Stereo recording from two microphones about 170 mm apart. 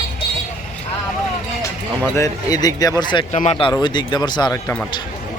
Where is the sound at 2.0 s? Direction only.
15° left (ahead or behind).